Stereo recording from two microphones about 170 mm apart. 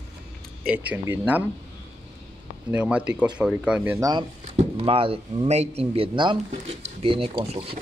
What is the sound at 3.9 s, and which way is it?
Speech, 20° right (ahead or behind).